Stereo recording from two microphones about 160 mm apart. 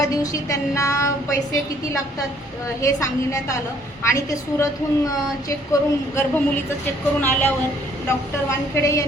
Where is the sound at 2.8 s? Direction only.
20° left (ahead or behind).